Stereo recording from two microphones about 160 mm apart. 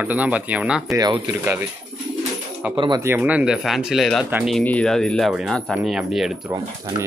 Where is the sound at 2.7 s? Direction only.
30° right (ahead or behind).